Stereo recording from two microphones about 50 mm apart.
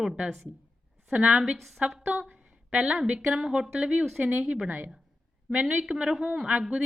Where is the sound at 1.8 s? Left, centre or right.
Right.